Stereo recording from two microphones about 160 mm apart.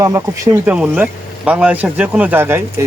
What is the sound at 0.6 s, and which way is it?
Speech, 10° right (ahead or behind).